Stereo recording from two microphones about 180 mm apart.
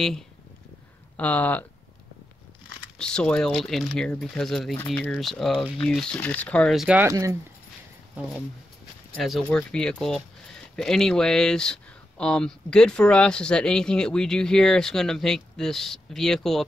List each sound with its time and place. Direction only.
1.1 s speech: 10° left (ahead or behind)
3.0 s speech: 5° left (ahead or behind)
7.1 s speech: 20° right (ahead or behind)
9.1 s speech: 5° left (ahead or behind)